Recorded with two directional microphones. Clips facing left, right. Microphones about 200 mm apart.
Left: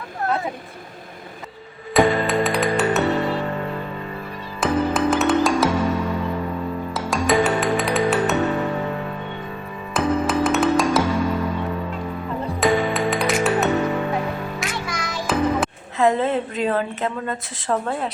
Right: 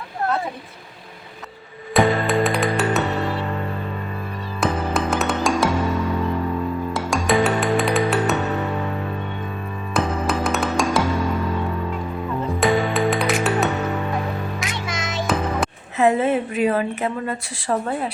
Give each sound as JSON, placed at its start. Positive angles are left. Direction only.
{"t": 1.9, "sound": "music", "side_deg": 0}
{"t": 4.6, "sound": "music", "side_deg": 0}
{"t": 6.9, "sound": "music", "side_deg": 0}
{"t": 9.9, "sound": "music", "side_deg": 0}
{"t": 12.5, "sound": "music", "side_deg": 0}
{"t": 14.8, "sound": "music", "side_deg": -20}
{"t": 16.0, "sound": "a woman's voice", "side_deg": -15}